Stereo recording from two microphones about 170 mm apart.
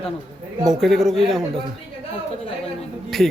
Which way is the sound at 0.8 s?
Centre (ahead or behind).